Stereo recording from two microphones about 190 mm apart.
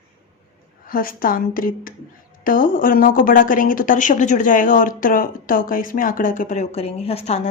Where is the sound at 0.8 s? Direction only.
50° left (ahead or behind).